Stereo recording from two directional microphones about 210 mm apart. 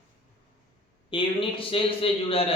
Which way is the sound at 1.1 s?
25° left (ahead or behind).